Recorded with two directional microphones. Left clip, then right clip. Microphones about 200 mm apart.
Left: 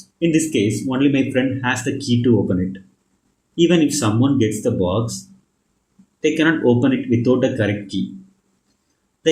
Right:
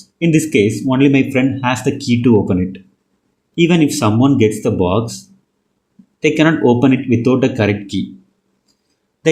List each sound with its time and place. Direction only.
0.2 s speech: 35° right (ahead or behind)
3.5 s speech: 35° right (ahead or behind)
6.1 s speech: 35° right (ahead or behind)